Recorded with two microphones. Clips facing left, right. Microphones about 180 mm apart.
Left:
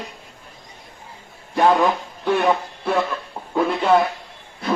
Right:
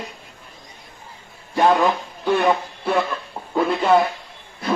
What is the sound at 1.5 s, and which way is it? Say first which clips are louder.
Speech: even; centre (ahead or behind).